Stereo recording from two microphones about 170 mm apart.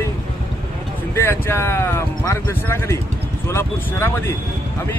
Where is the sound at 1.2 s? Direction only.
15° left (ahead or behind).